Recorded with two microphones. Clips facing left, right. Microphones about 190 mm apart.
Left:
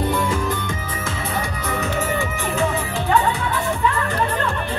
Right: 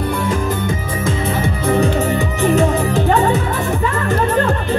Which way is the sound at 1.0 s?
25° right (ahead or behind).